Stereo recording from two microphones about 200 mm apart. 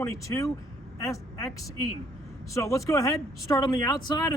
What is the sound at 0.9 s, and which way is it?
Vehicle, 15° left (ahead or behind).